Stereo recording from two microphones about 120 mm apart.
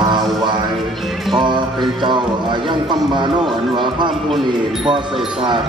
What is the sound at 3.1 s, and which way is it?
Speech, 40° right (ahead or behind).